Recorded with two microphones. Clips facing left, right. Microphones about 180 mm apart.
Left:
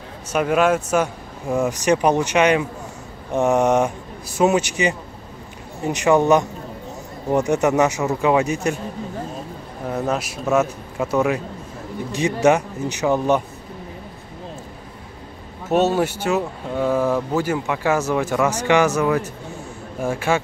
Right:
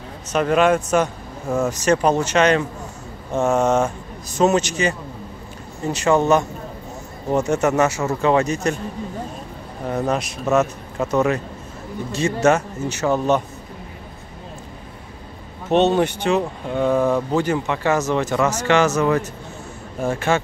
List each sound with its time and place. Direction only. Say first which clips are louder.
0.3 s speech: right 1 dB; 10° left (ahead or behind)
9.8 s speech: right 1 dB; 5° left (ahead or behind)
15.7 s speech: right 2 dB; 5° left (ahead or behind)